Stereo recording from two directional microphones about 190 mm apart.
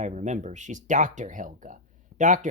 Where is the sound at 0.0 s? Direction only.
40° right (ahead or behind).